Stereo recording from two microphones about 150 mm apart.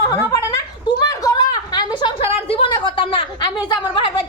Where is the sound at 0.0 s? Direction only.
25° left (ahead or behind).